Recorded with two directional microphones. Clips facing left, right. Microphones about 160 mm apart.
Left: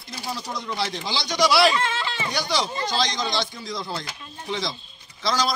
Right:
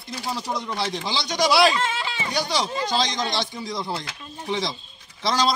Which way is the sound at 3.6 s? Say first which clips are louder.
Right 2 dB; 20° right (ahead or behind).